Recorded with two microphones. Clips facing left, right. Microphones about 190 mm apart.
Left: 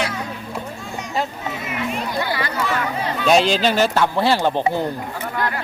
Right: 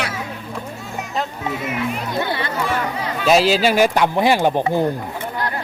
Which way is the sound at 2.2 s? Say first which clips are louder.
Right 2 dB; 25° right (ahead or behind).